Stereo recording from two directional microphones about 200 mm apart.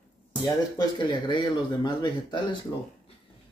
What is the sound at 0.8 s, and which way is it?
Speech, 20° left (ahead or behind).